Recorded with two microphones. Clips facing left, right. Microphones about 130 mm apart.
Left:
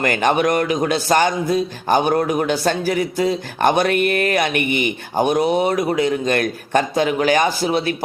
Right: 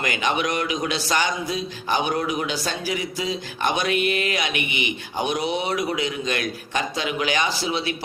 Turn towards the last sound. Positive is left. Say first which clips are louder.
# left 6 dB
turn(degrees=50)  # may be behind; listen again after turning